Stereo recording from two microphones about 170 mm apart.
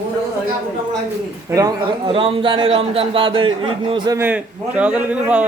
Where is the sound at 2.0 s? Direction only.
30° right (ahead or behind).